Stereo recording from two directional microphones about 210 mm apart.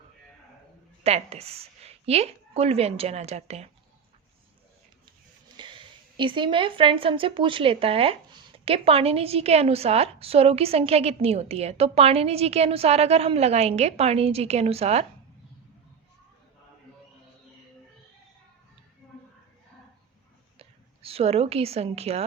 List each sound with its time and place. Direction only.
1.0 s a woman's voice: 30° right (ahead or behind)
5.5 s a woman's voice: 25° right (ahead or behind)
20.6 s a woman's voice: 30° right (ahead or behind)